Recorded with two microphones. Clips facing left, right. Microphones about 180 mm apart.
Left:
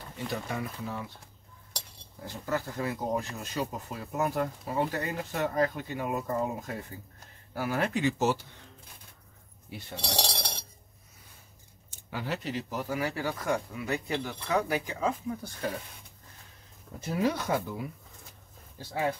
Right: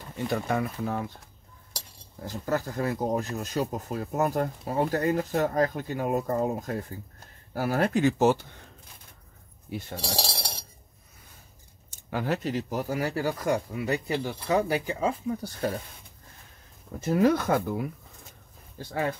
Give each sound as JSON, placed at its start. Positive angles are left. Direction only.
{"t": 0.3, "sound": "speech", "side_deg": -55}
{"t": 2.2, "sound": "speech", "side_deg": -45}
{"t": 10.1, "sound": "cutlery", "side_deg": -5}
{"t": 11.9, "sound": "speech", "side_deg": -50}
{"t": 17.0, "sound": "speech", "side_deg": -50}